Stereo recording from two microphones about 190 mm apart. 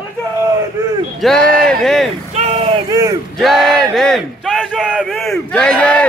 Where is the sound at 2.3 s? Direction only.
30° right (ahead or behind).